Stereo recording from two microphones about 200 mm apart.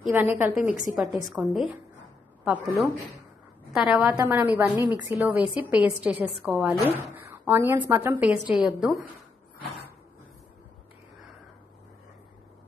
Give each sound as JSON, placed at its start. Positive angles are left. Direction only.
{"t": 0.1, "sound": "a woman's voice", "side_deg": -10}
{"t": 0.7, "sound": "a woman's voice", "side_deg": 40}
{"t": 0.9, "sound": "a woman's voice", "side_deg": -5}